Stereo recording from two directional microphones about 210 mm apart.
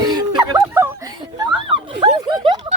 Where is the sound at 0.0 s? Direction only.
20° right (ahead or behind).